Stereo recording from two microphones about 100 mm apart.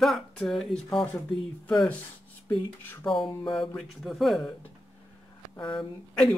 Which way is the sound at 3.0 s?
60° left (ahead or behind).